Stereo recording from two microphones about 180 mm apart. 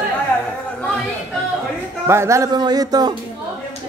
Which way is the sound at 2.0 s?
15° right (ahead or behind).